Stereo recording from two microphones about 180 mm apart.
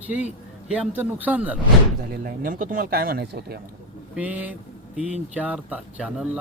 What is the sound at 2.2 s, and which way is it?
Speech, 50° right (ahead or behind).